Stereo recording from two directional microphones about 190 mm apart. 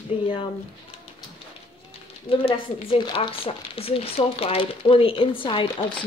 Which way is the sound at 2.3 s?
30° left (ahead or behind).